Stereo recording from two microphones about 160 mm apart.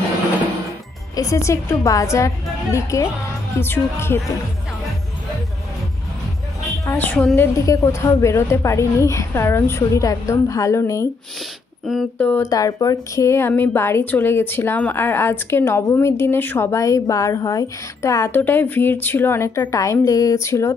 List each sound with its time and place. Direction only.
1.1 s a woman's voice: 20° left (ahead or behind)
6.9 s speech: 10° left (ahead or behind)
7.3 s speech: 20° left (ahead or behind)
11.9 s speech: 5° left (ahead or behind)
12.4 s speech: 20° left (ahead or behind)